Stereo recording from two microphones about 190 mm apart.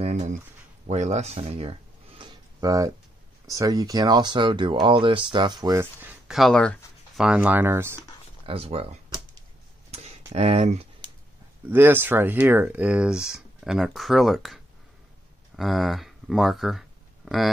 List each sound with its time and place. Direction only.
0.8 s a sound: 35° right (ahead or behind); by 2.9 s 20° right (ahead or behind)
3.4 s speech: 20° right (ahead or behind); by 7.2 s 5° left (ahead or behind)
7.2 s speech: 5° right (ahead or behind)
8.5 s speech: 30° right (ahead or behind)
9.8 s a sound: 35° right (ahead or behind)
11.7 s speech: 10° right (ahead or behind)